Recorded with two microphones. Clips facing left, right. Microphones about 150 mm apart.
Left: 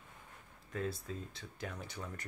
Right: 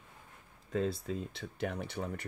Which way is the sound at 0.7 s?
90° right.